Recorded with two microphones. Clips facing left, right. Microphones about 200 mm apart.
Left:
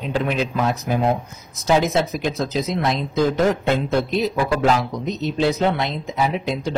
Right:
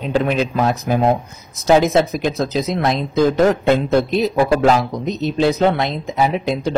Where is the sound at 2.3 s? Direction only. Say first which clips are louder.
Right 3 dB; 45° right (ahead or behind).